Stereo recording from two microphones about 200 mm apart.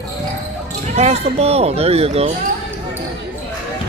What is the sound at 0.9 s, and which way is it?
Speech, 35° right (ahead or behind).